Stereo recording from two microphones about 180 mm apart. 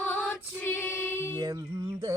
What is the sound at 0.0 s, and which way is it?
Choir, 10° left (ahead or behind).